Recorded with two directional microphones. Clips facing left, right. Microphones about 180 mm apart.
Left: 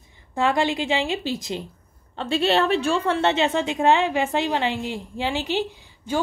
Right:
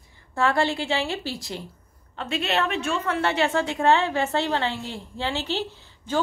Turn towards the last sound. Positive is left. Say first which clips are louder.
# even
turn(degrees=15)  # may be behind; listen again after turning